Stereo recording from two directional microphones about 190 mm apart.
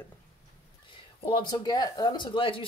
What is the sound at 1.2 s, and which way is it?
Speech, 25° left (ahead or behind).